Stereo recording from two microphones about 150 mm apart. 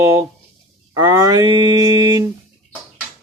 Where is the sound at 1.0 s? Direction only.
25° right (ahead or behind).